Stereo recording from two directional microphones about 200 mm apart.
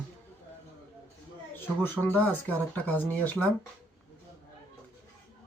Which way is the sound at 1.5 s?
10° left (ahead or behind).